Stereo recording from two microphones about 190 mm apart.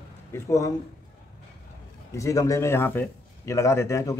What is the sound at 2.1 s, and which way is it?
A man's voice, 15° left (ahead or behind).